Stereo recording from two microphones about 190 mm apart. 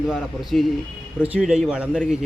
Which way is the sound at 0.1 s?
Centre (ahead or behind).